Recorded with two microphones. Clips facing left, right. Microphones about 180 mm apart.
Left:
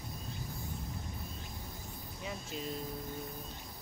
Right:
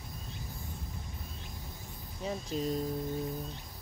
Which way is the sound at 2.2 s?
40° right (ahead or behind).